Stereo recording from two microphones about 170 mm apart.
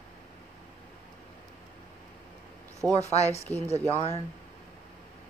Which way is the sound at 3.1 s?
40° left (ahead or behind).